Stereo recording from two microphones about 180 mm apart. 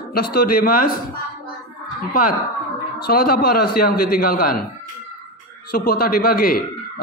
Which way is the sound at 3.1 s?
55° left (ahead or behind).